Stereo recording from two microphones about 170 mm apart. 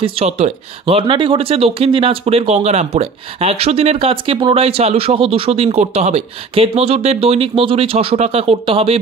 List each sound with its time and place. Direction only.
0.0 s speech: 35° right (ahead or behind)